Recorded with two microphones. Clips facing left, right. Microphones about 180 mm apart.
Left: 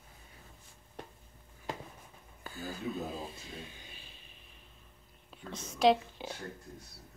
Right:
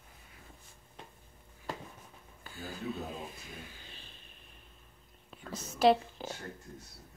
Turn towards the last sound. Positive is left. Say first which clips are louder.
# right 1 dB
turn(degrees=-5)  # may be behind; listen again after turning